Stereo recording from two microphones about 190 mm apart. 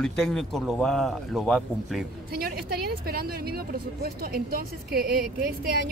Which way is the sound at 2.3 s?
55° right (ahead or behind).